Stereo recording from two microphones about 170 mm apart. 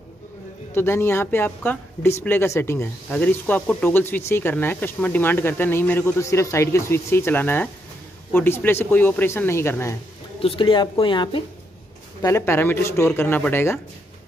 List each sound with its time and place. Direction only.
0.7 s speech: 15° left (ahead or behind)
10.4 s speech: 30° left (ahead or behind)
12.2 s speech: 15° left (ahead or behind)